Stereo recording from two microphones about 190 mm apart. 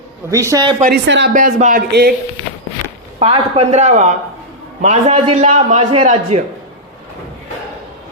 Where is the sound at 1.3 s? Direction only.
40° right (ahead or behind).